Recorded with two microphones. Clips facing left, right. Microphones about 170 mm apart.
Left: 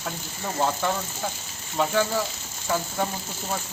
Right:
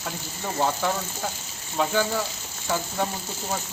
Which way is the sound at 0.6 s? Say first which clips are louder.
Even; centre (ahead or behind).